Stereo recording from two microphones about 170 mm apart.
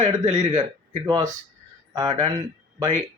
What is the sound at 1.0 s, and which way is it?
Speech, 25° right (ahead or behind).